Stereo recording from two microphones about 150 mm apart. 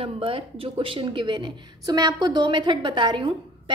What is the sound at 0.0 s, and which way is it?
A woman's voice, 40° right (ahead or behind).